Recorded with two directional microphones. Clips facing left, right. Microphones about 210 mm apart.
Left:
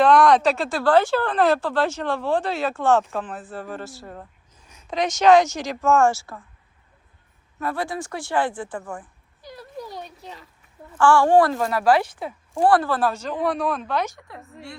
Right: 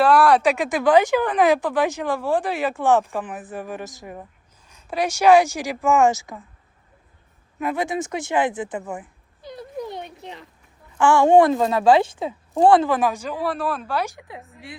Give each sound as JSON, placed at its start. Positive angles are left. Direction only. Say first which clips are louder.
{"t": 0.0, "sound": "speech", "louder": "even", "side_deg": -5}
{"t": 7.6, "sound": "speech", "louder": "right 3 dB", "side_deg": -20}